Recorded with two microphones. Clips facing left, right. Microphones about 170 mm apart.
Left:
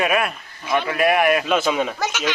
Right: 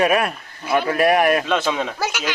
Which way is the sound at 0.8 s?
40° right (ahead or behind).